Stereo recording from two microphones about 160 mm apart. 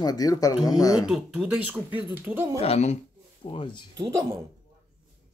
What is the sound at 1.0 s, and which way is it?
Speech, 5° right (ahead or behind).